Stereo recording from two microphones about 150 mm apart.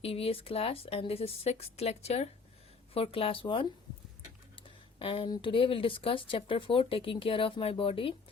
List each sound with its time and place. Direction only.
0.0 s speech: 40° left (ahead or behind)
4.9 s speech: 35° left (ahead or behind)